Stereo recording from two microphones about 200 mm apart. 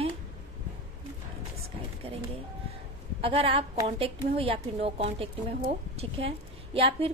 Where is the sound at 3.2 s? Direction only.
25° right (ahead or behind).